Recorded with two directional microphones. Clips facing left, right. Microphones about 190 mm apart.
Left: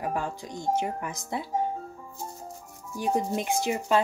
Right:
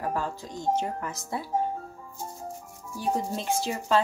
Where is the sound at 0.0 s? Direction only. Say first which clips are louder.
Even; 15° left (ahead or behind).